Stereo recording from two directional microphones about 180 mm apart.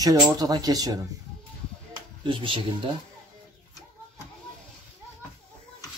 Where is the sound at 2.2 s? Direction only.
30° right (ahead or behind).